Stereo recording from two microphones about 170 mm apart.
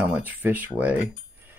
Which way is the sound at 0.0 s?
10° right (ahead or behind).